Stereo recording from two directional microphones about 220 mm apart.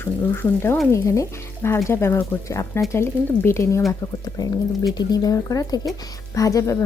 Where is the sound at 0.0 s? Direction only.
10° left (ahead or behind).